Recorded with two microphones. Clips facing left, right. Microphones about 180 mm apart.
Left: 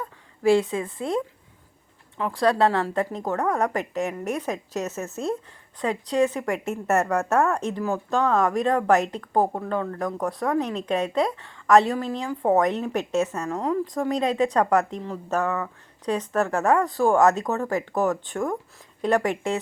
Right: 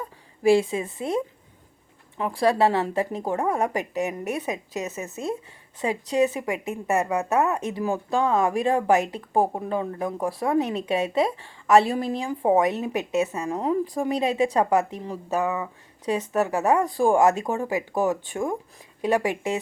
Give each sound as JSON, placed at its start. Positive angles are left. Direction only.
{"t": 0.4, "sound": "a woman's voice", "side_deg": -10}